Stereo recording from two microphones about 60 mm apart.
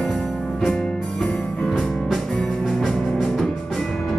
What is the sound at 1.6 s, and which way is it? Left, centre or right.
Music, centre.